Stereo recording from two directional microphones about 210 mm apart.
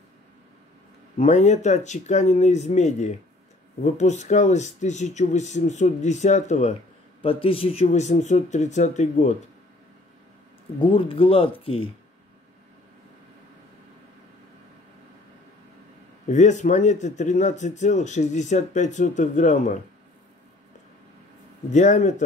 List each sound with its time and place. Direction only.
1.1 s speech: 35° left (ahead or behind)
10.9 s speech: 25° left (ahead or behind)
16.3 s speech: 35° left (ahead or behind)
21.6 s speech: 35° left (ahead or behind)